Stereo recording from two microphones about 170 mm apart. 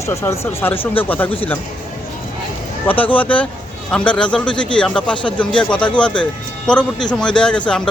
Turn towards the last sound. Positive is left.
turn(degrees=5)  # may be behind; listen again after turning